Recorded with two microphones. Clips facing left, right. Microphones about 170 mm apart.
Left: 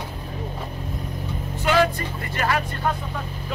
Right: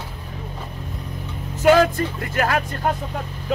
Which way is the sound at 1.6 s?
45° right (ahead or behind).